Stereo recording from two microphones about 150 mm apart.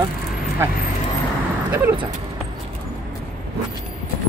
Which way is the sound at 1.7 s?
15° right (ahead or behind).